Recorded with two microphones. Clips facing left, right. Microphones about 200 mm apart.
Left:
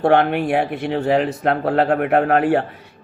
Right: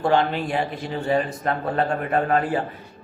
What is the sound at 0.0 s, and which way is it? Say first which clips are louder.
A man's voice: left 5 dB; 60° left (ahead or behind).